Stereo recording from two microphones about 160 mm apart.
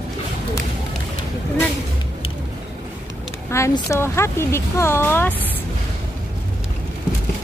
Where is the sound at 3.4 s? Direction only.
20° left (ahead or behind).